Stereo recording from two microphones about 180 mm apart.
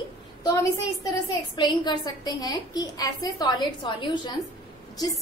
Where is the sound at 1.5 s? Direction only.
25° left (ahead or behind).